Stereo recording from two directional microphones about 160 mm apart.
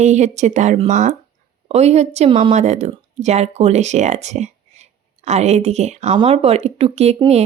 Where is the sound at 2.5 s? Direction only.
45° right (ahead or behind).